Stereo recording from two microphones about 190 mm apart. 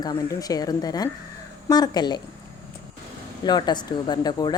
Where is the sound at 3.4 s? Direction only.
20° left (ahead or behind).